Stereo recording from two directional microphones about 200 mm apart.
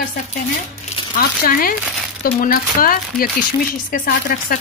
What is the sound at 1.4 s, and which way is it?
Speech, 45° left (ahead or behind).